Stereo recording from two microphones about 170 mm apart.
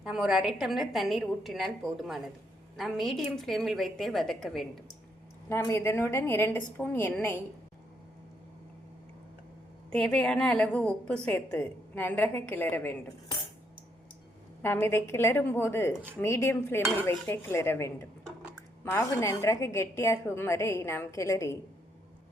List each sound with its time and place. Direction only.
0.0 s a woman's voice: 5° right (ahead or behind)
5.5 s a woman's voice: 15° left (ahead or behind)
9.9 s a woman's voice: 5° left (ahead or behind)
14.6 s a woman's voice: 15° left (ahead or behind)